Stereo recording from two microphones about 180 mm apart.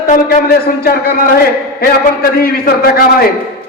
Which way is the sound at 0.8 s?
55° left (ahead or behind).